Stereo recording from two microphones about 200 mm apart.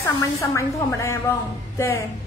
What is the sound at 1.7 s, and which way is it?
Music, 15° left (ahead or behind).